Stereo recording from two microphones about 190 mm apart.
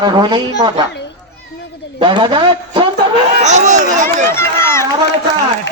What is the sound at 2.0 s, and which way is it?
Speech, 25° right (ahead or behind).